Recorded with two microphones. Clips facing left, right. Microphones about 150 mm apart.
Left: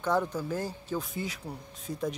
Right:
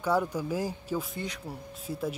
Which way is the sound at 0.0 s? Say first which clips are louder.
Right 1 dB; 10° right (ahead or behind).